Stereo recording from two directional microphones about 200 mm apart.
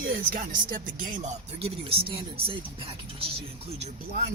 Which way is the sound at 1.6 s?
30° right (ahead or behind).